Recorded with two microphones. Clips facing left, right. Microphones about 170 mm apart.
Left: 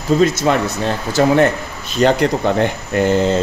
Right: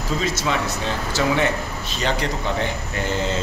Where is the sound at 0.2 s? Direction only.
55° left (ahead or behind).